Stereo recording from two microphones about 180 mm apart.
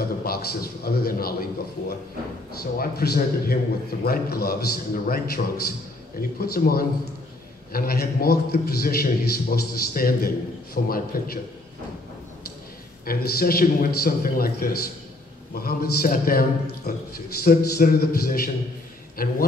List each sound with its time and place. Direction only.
0.2 s a man's voice: 55° left (ahead or behind)
13.0 s a man's voice: 55° left (ahead or behind)